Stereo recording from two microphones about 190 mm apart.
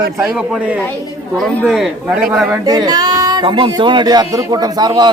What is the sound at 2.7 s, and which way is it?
Speech, 20° right (ahead or behind).